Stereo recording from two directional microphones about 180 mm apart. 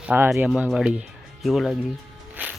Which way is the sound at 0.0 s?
5° right (ahead or behind).